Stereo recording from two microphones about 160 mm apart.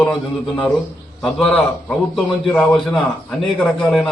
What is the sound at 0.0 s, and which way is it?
A man's voice, 5° left (ahead or behind).